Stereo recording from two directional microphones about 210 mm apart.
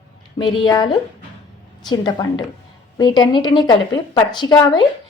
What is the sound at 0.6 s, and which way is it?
Speech, 20° left (ahead or behind).